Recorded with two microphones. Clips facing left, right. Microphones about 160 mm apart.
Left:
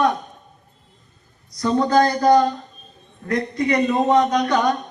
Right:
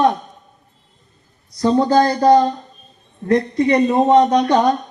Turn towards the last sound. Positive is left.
turn(degrees=-30)  # may be behind; listen again after turning